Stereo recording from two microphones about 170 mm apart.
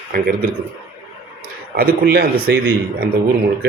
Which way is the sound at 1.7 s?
60° right (ahead or behind).